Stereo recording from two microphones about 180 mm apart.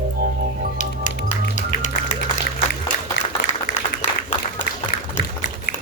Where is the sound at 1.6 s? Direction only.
45° left (ahead or behind).